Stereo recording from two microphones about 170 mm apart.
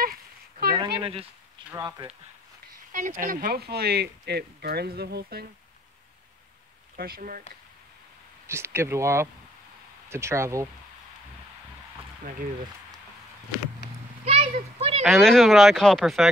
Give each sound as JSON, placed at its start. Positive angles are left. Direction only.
{"t": 0.0, "sound": "a sound", "side_deg": -60}
{"t": 0.7, "sound": "a sound", "side_deg": -30}
{"t": 1.7, "sound": "speech", "side_deg": -20}
{"t": 2.9, "sound": "speech", "side_deg": -50}
{"t": 7.0, "sound": "speech", "side_deg": -60}
{"t": 8.5, "sound": "speech", "side_deg": -15}
{"t": 14.2, "sound": "a child's voice", "side_deg": -35}
{"t": 15.0, "sound": "speech", "side_deg": 0}